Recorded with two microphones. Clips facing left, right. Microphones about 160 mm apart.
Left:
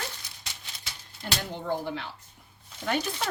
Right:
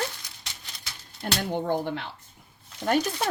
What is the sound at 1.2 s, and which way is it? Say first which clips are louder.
Speech: right 6 dB; 55° right (ahead or behind).